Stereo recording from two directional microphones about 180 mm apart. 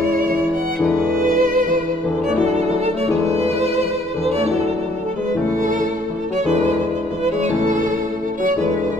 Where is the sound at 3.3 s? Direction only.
35° right (ahead or behind).